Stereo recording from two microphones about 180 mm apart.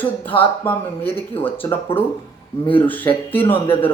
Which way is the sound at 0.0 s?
10° left (ahead or behind).